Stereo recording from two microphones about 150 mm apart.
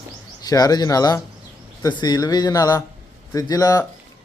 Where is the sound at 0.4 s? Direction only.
25° left (ahead or behind).